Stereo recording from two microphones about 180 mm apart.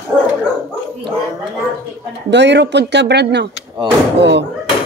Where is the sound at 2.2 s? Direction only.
75° right (ahead or behind).